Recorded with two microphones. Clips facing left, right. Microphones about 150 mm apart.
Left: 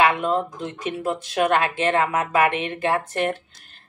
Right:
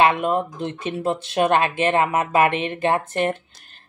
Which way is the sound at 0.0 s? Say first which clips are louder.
Right 1 dB; 20° right (ahead or behind).